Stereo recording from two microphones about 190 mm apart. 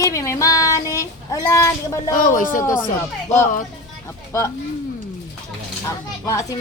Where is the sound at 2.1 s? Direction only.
45° left (ahead or behind).